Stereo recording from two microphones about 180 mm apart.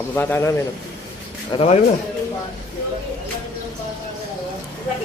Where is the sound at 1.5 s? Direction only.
35° left (ahead or behind).